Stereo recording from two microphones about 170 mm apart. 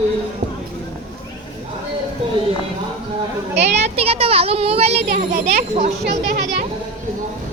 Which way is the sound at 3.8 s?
35° right (ahead or behind).